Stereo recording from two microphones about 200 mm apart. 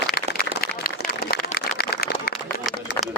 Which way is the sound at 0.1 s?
50° left (ahead or behind).